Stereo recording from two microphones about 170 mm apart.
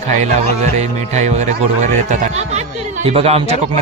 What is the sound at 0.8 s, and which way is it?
Speech, 40° right (ahead or behind).